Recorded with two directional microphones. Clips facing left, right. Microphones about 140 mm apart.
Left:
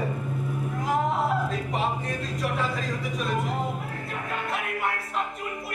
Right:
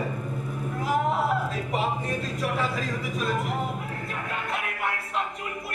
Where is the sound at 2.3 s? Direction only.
Centre (ahead or behind).